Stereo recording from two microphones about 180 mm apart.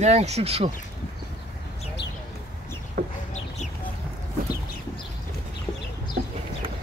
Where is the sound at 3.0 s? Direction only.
55° right (ahead or behind).